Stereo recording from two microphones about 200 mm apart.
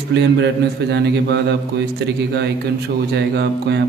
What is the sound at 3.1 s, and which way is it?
Speech, 55° right (ahead or behind).